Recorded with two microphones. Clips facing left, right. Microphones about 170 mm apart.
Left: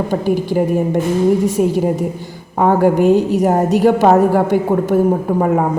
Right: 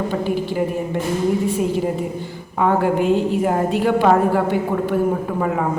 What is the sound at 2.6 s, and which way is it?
A woman's voice, 40° left (ahead or behind).